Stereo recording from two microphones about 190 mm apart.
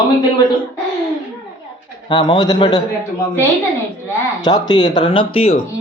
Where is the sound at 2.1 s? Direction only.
25° left (ahead or behind).